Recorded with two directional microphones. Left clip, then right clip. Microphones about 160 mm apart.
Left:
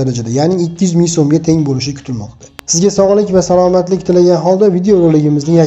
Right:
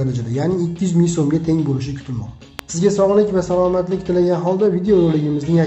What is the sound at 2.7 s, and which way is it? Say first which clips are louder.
Speech: left 5 dB; 45° left (ahead or behind).